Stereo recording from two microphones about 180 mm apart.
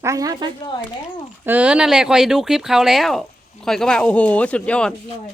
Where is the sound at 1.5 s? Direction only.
5° right (ahead or behind).